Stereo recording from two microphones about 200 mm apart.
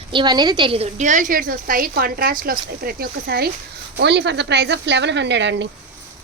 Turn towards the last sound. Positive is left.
turn(degrees=-60)  # may be behind; listen again after turning